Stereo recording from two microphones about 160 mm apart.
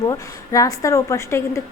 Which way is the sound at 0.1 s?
20° left (ahead or behind).